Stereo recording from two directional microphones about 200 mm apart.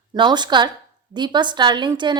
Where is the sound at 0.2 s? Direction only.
20° right (ahead or behind).